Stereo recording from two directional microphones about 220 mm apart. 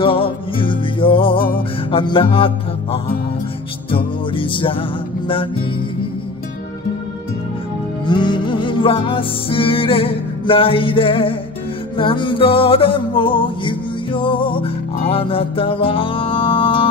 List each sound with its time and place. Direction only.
0.0 s music: 25° left (ahead or behind)
8.0 s music: 20° left (ahead or behind)